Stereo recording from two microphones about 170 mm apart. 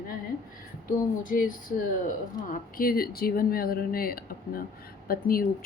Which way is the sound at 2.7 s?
60° left (ahead or behind).